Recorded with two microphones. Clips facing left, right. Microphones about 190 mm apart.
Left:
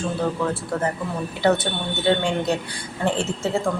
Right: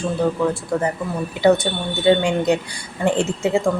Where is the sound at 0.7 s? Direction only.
15° right (ahead or behind).